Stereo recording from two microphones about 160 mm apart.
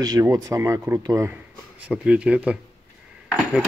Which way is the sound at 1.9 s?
5° right (ahead or behind).